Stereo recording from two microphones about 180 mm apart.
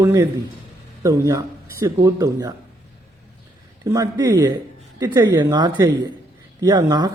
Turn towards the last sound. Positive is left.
turn(degrees=-20)  # may be behind; listen again after turning